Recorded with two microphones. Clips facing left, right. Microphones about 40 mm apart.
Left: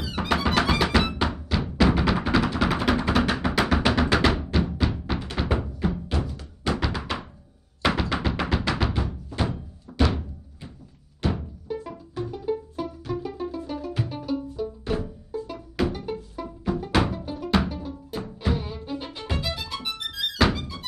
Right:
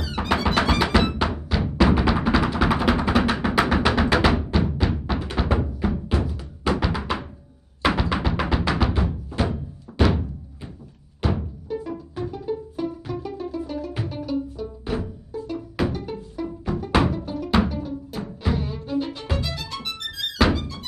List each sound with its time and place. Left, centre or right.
0.0 s music: centre
11.6 s music: centre
16.0 s music: centre